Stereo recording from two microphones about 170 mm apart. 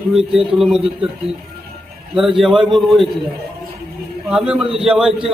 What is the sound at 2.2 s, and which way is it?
Speech, centre (ahead or behind).